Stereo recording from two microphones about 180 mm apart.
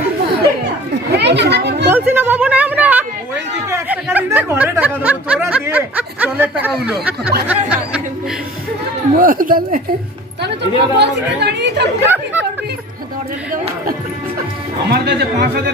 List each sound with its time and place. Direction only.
1.1 s children playing: 70° right (ahead or behind)
1.9 s a sound: 10° right (ahead or behind)
3.7 s chatter: 10° right (ahead or behind)
6.8 s speech: 5° right (ahead or behind)
7.4 s a sound: 5° right (ahead or behind)
9.1 s speech: 50° right (ahead or behind)
10.9 s speech: 70° right (ahead or behind)
12.0 s chatter: 10° right (ahead or behind)
14.8 s speech: 65° right (ahead or behind)